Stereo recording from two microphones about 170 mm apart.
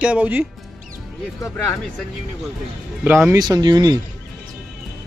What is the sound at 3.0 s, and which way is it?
Speech, 10° right (ahead or behind).